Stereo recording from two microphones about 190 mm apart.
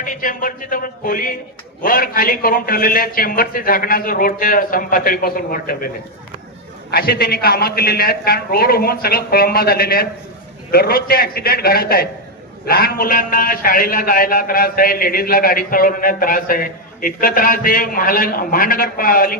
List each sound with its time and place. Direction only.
0.0 s a man's voice: 45° left (ahead or behind)
6.9 s a man's voice: 55° left (ahead or behind)